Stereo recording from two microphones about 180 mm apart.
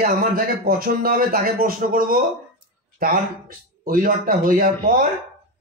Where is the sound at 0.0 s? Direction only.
50° right (ahead or behind).